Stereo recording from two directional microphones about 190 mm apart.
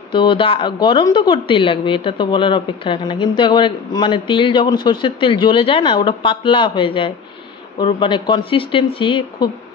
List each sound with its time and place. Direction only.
0.1 s a woman's voice: 25° left (ahead or behind)